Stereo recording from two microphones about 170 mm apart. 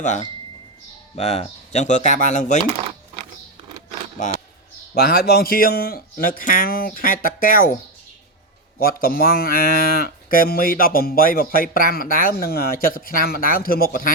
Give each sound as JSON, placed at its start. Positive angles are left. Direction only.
{"t": 0.0, "sound": "speech", "side_deg": 45}
{"t": 4.9, "sound": "speech", "side_deg": 65}
{"t": 8.8, "sound": "speech", "side_deg": 60}